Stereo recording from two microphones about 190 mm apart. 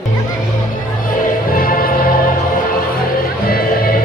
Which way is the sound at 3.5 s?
50° left (ahead or behind).